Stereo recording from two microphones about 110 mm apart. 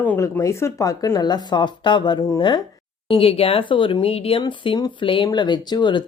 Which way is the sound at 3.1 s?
60° left (ahead or behind).